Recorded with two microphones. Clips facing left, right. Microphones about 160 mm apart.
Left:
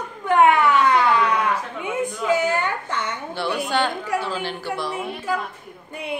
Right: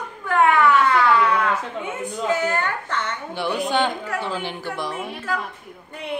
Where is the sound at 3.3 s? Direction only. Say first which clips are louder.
Right 1 dB; 15° right (ahead or behind).